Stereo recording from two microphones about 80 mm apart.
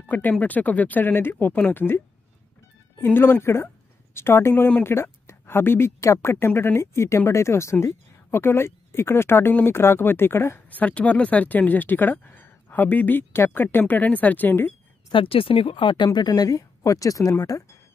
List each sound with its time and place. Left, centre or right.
0.1 s speech: centre
3.0 s a woman's voice: left
10.7 s speech: centre
15.1 s a woman's voice: left